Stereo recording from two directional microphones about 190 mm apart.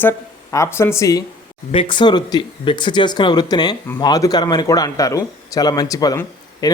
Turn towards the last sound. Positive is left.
turn(degrees=20)  # may be behind; listen again after turning